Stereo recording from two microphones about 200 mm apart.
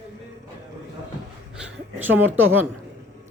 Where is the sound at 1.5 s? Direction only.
10° right (ahead or behind).